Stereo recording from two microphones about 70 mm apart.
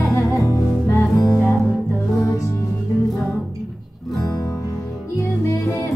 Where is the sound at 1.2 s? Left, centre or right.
Centre.